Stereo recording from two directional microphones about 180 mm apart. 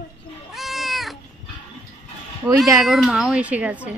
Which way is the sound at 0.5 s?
Centre (ahead or behind).